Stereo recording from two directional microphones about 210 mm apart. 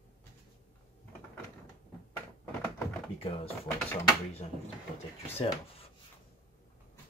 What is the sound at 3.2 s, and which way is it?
Speech, 25° left (ahead or behind).